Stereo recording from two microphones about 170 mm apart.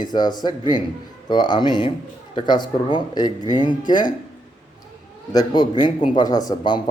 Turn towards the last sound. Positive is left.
turn(degrees=25)  # may be behind; listen again after turning